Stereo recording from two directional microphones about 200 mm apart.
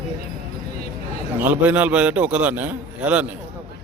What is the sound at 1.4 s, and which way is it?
A man's voice, 10° right (ahead or behind).